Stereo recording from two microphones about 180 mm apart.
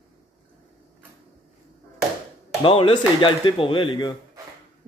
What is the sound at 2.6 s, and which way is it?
A man's voice, 30° left (ahead or behind).